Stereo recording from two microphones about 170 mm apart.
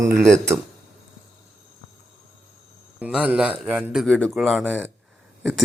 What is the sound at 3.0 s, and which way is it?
Speech, 5° right (ahead or behind).